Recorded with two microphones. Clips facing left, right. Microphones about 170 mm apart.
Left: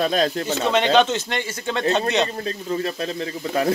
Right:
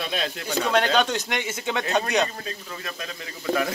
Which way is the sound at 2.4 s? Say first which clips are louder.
Left 10 dB; 30° left (ahead or behind).